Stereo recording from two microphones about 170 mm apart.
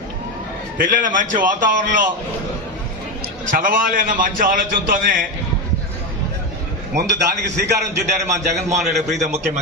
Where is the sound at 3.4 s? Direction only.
55° right (ahead or behind).